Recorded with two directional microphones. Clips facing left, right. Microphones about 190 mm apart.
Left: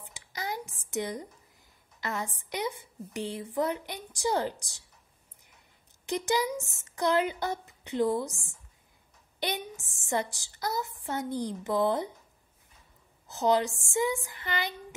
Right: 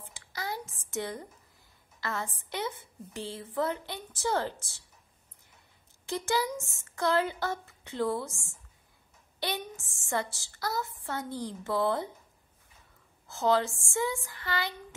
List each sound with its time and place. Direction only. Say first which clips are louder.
0.0 s a sound: left 1 dB; 15° left (ahead or behind)
2.0 s a woman's voice: left 1 dB; 15° left (ahead or behind)
6.0 s a woman's voice: left 2 dB; 20° left (ahead or behind)
13.3 s a woman's voice: left 1 dB; 20° left (ahead or behind)